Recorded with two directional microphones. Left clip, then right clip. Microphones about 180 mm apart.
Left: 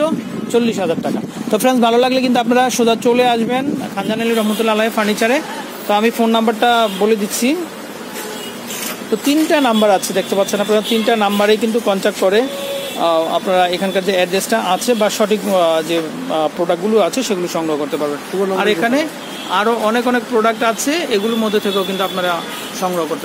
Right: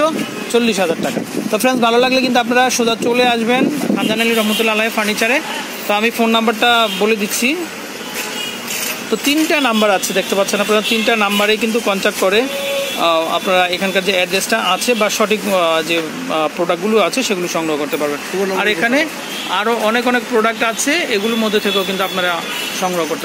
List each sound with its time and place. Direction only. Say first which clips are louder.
0.0 s a sound: right 2 dB; 30° left (ahead or behind)
1.5 s a man's voice: left 1 dB; 40° left (ahead or behind); by 7.5 s 10° left (ahead or behind)
9.3 s speech: left 1 dB; 5° left (ahead or behind)